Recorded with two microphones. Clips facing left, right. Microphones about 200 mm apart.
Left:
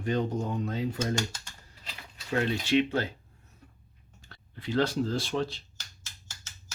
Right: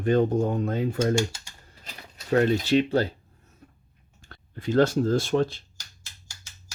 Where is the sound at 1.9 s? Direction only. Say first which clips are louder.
Right 8 dB; 40° right (ahead or behind).